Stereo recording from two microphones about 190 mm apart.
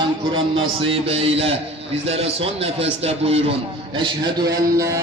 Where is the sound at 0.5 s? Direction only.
30° right (ahead or behind).